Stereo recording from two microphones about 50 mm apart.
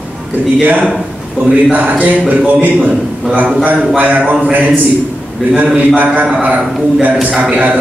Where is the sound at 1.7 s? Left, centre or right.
Right.